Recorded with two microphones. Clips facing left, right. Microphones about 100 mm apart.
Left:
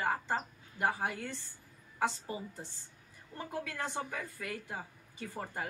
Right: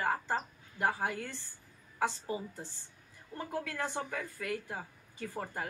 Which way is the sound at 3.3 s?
20° left (ahead or behind).